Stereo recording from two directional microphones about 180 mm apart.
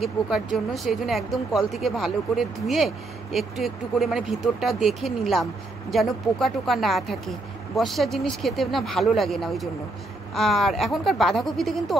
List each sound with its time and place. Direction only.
0.0 s speech: centre (ahead or behind)